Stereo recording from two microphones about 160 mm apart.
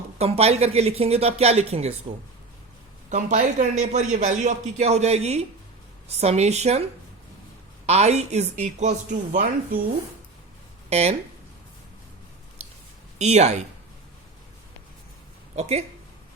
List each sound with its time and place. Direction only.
0.2 s speech: 40° right (ahead or behind)
3.1 s a man's voice: 50° right (ahead or behind)
7.9 s a man's voice: 45° right (ahead or behind)
10.8 s speech: 40° right (ahead or behind)
12.6 s a sound: 40° right (ahead or behind)
13.1 s speech: 45° right (ahead or behind)
15.5 s a man's voice: 45° right (ahead or behind)